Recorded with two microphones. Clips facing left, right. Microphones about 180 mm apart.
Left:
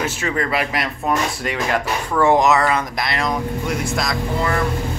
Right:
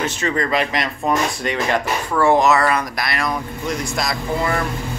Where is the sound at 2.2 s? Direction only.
15° left (ahead or behind).